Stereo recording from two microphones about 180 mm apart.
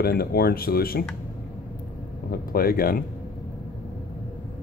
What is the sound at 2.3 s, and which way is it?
Speech, 55° left (ahead or behind).